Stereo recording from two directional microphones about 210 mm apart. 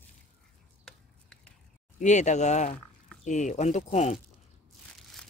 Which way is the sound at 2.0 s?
35° left (ahead or behind).